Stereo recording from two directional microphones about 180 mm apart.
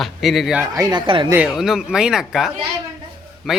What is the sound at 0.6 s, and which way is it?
Speech, 20° right (ahead or behind).